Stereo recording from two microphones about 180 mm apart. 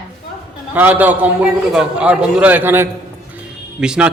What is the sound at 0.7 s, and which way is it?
A man's voice, 10° right (ahead or behind).